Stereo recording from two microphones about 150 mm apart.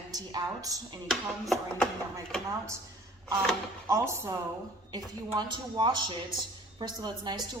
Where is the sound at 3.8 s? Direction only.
20° right (ahead or behind).